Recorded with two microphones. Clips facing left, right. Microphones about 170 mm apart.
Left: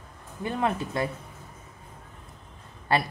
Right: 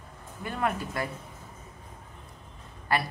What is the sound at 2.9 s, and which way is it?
Speech, 25° left (ahead or behind).